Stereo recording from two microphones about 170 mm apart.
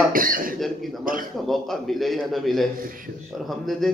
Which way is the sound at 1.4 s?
Centre (ahead or behind).